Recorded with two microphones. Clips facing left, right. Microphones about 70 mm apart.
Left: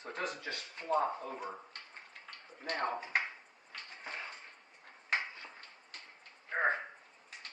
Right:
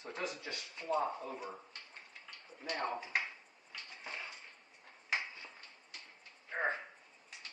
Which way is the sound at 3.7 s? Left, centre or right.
Left.